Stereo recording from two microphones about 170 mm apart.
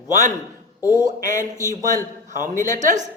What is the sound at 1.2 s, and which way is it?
Speech, 50° right (ahead or behind).